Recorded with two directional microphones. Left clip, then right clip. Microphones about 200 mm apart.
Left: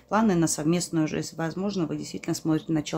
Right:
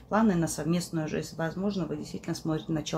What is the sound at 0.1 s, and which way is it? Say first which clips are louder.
Speech: left 3 dB; 35° left (ahead or behind).